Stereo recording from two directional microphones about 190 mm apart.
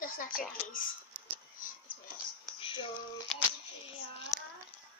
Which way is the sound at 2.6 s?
25° left (ahead or behind).